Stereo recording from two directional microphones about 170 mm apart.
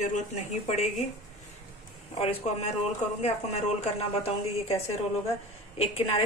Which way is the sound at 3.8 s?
35° left (ahead or behind).